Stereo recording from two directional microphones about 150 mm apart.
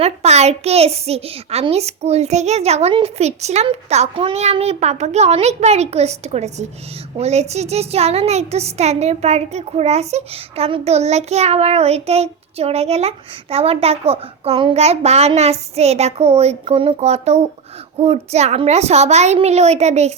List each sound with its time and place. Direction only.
0.0 s speech: 45° right (ahead or behind)